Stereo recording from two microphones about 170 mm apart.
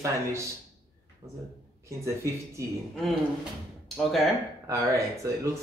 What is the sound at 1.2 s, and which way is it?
Speech, 30° right (ahead or behind).